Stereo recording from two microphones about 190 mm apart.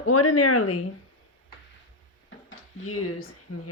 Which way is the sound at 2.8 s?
90° left.